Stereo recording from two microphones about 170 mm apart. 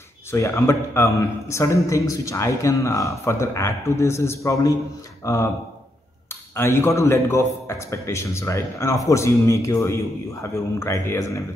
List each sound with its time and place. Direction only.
0.3 s a man's voice: 15° left (ahead or behind)
6.5 s a man's voice: 15° left (ahead or behind)